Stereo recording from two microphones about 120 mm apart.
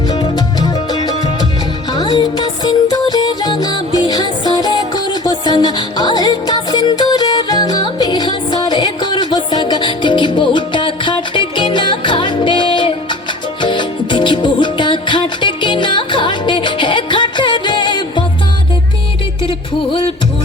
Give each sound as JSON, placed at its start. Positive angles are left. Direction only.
{"t": 0.1, "sound": "music", "side_deg": 35}
{"t": 19.4, "sound": "music", "side_deg": 45}